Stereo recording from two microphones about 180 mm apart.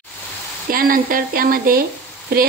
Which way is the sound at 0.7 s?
50° right (ahead or behind).